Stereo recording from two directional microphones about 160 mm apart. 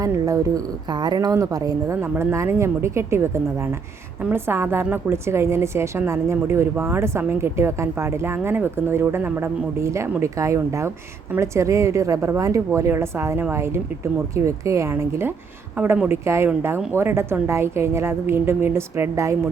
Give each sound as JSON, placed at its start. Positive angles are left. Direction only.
{"t": 0.0, "sound": "a woman's voice", "side_deg": -20}